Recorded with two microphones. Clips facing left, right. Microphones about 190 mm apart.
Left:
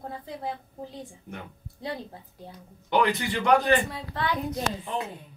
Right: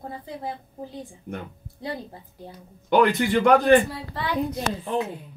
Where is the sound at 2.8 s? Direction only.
55° right (ahead or behind).